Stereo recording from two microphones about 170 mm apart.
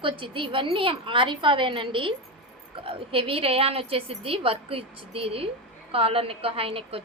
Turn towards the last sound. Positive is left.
turn(degrees=-35)  # may be behind; listen again after turning